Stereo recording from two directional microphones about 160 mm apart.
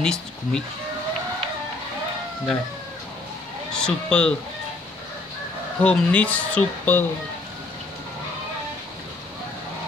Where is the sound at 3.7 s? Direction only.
5° left (ahead or behind).